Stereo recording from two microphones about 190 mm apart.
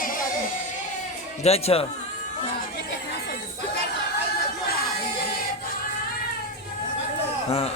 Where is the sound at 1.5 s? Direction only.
30° left (ahead or behind).